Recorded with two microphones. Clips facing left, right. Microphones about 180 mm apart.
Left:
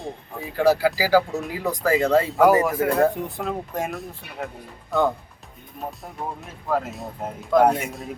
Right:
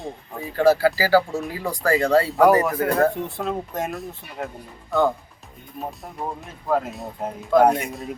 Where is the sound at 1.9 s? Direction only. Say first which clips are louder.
Right 1 dB; centre (ahead or behind).